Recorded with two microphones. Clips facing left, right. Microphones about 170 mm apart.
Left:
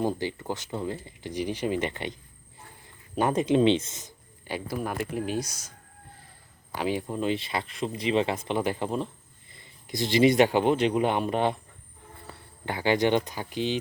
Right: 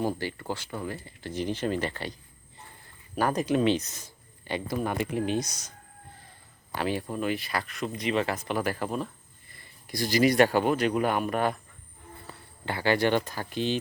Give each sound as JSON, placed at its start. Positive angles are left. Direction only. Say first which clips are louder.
{"t": 0.0, "sound": "speech", "louder": "left 2 dB", "side_deg": 20}
{"t": 3.2, "sound": "speech", "louder": "left 3 dB", "side_deg": 25}
{"t": 4.4, "sound": "speech", "louder": "right 2 dB", "side_deg": 5}
{"t": 6.7, "sound": "speech", "louder": "left 1 dB", "side_deg": 15}
{"t": 12.6, "sound": "speech", "louder": "left 1 dB", "side_deg": 15}